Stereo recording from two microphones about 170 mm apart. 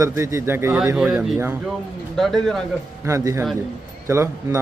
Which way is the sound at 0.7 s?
5° right (ahead or behind).